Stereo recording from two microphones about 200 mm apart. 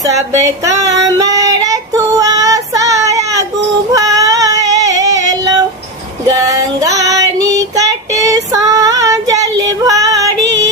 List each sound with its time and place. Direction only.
0.6 s child singing: 15° right (ahead or behind)
3.9 s female singing: 15° right (ahead or behind)
6.2 s child singing: 15° right (ahead or behind)
9.3 s female singing: 15° right (ahead or behind)